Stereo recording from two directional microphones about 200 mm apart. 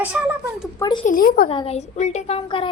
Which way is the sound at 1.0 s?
45° left (ahead or behind).